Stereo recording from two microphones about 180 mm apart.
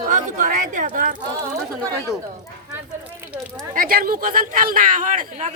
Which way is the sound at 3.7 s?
50° right (ahead or behind).